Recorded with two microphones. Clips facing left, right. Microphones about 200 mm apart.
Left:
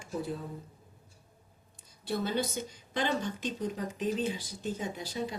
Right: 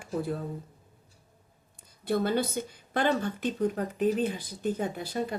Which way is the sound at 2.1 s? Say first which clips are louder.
Right 5 dB; 55° right (ahead or behind).